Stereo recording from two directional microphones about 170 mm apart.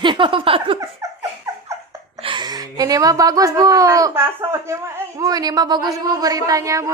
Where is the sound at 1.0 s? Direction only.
20° right (ahead or behind).